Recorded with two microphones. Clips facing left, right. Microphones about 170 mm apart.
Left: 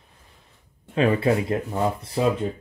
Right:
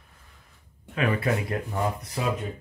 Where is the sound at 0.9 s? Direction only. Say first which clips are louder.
Left 6 dB; 30° left (ahead or behind).